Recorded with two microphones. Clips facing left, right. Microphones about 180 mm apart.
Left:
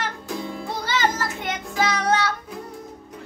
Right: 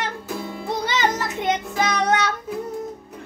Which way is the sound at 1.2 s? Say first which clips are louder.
Right 5 dB; 20° right (ahead or behind).